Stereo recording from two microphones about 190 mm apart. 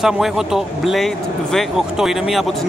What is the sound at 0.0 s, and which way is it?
A man's voice, centre (ahead or behind).